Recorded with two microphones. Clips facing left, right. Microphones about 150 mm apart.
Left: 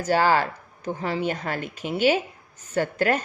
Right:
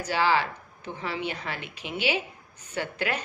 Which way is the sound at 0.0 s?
45° left (ahead or behind).